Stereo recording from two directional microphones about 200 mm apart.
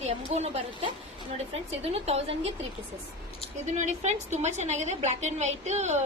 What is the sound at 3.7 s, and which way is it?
A woman's voice, 35° right (ahead or behind).